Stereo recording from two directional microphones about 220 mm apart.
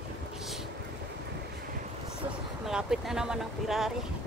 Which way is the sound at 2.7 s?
5° right (ahead or behind).